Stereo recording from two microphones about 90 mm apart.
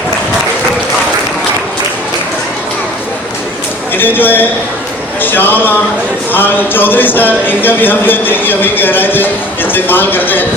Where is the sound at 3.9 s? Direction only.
20° left (ahead or behind).